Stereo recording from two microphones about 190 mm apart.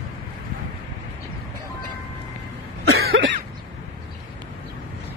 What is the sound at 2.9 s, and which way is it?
Cough, 90° right.